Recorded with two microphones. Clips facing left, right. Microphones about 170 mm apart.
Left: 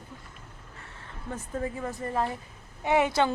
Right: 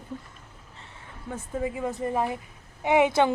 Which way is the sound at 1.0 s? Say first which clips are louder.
Right 1 dB; 10° right (ahead or behind).